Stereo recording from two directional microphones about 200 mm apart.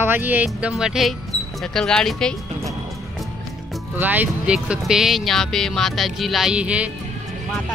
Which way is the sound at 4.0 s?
10° right (ahead or behind).